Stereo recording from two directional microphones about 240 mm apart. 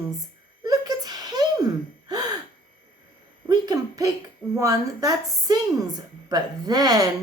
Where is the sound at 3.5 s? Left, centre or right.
Centre.